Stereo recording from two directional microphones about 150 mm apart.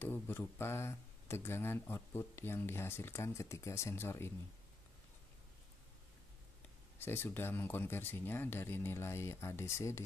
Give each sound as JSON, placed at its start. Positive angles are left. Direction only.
{"t": 0.0, "sound": "speech", "side_deg": 15}
{"t": 7.0, "sound": "speech", "side_deg": 15}